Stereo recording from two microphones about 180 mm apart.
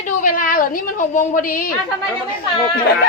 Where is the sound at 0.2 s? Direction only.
50° left (ahead or behind).